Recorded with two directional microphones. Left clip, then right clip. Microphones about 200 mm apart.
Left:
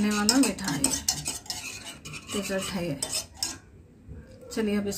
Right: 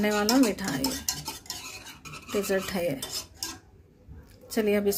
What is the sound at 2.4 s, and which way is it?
Speech, 45° right (ahead or behind).